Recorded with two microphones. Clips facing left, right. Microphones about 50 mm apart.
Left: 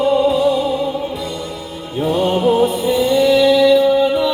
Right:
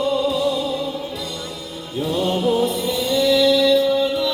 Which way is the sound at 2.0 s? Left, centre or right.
Left.